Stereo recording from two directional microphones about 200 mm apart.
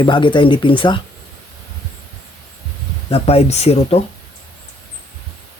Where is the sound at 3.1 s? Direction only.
30° left (ahead or behind).